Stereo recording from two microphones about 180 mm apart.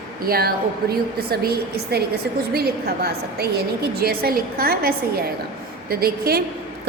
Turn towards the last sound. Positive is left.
turn(degrees=-60)  # may be behind; listen again after turning